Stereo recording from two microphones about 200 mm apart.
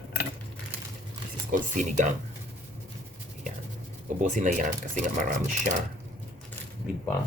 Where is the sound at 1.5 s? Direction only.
40° right (ahead or behind).